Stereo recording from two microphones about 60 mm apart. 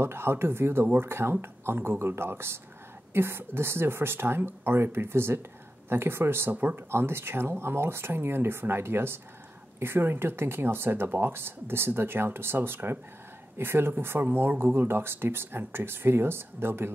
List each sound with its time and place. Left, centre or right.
0.0 s speech: right
6.5 s speech: right
6.9 s speech: right